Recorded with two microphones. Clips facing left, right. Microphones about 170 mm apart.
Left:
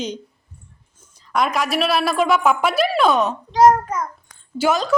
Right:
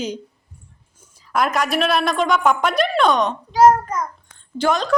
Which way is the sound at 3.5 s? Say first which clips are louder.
Even; 5° right (ahead or behind).